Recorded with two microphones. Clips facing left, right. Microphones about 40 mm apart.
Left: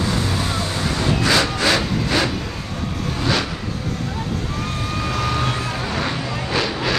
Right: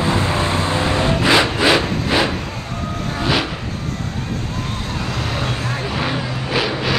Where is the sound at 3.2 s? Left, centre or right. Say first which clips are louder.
Right 2 dB; right.